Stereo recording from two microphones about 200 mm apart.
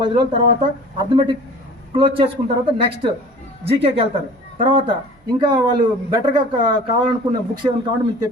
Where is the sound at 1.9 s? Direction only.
25° right (ahead or behind).